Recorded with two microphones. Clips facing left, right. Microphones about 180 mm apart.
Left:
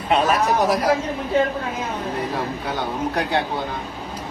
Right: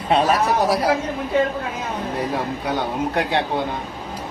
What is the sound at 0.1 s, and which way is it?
Speech, 35° right (ahead or behind).